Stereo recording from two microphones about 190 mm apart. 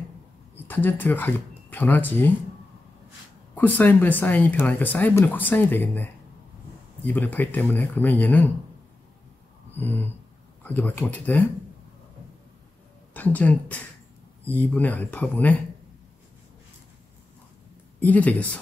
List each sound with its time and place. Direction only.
0.6 s speech: 10° left (ahead or behind)
3.5 s speech: 10° left (ahead or behind)
7.1 s speech: 10° left (ahead or behind)
9.8 s speech: 10° left (ahead or behind)
13.1 s speech: 10° left (ahead or behind)
18.0 s speech: 10° left (ahead or behind)